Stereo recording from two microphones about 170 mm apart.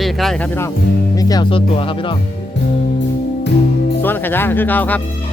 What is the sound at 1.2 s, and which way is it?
Speech, 20° left (ahead or behind).